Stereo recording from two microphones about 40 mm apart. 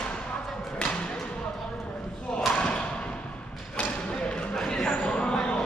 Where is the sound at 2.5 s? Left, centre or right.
Left.